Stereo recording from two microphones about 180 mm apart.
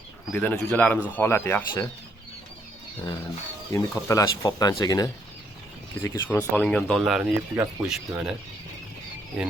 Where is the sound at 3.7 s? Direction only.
15° left (ahead or behind).